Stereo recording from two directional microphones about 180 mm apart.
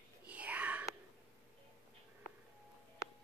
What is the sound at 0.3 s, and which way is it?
Whispering, 10° right (ahead or behind).